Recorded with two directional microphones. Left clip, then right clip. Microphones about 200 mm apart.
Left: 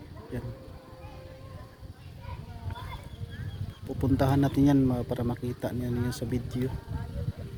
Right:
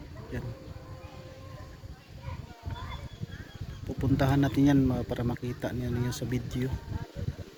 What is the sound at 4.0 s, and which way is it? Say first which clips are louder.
Speech: left 1 dB; 20° left (ahead or behind).